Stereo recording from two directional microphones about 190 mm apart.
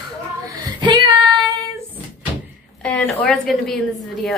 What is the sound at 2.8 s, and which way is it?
A woman's voice, 5° left (ahead or behind).